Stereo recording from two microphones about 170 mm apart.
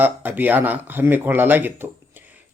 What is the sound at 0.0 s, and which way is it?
Speech, 10° right (ahead or behind).